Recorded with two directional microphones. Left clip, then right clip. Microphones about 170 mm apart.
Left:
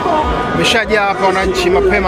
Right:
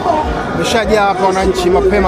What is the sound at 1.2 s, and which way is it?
Speech, 25° right (ahead or behind).